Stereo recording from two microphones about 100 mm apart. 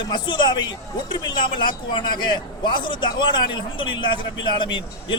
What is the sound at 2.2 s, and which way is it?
Speech, 50° left (ahead or behind).